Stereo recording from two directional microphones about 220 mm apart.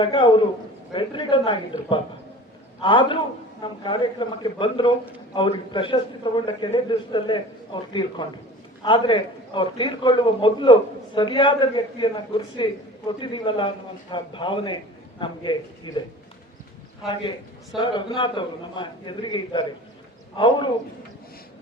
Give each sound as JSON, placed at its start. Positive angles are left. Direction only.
{"t": 0.0, "sound": "a man's voice", "side_deg": 20}
{"t": 17.7, "sound": "a man's voice", "side_deg": 20}